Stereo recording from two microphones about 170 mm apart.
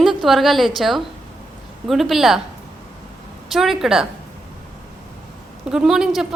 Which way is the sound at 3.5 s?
Centre (ahead or behind).